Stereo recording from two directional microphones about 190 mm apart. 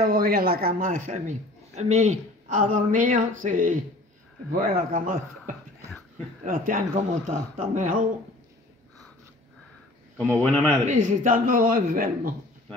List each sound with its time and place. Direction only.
0.0 s speech: 50° right (ahead or behind)
5.9 s a sound: 5° left (ahead or behind)
6.4 s speech: 45° right (ahead or behind)
10.4 s a man's voice: 10° left (ahead or behind)
10.9 s speech: 45° right (ahead or behind)